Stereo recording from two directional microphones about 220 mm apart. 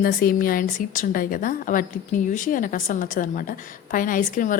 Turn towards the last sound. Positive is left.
turn(degrees=40)  # may be behind; listen again after turning